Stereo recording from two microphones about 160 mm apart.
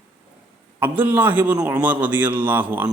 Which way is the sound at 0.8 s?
10° right (ahead or behind).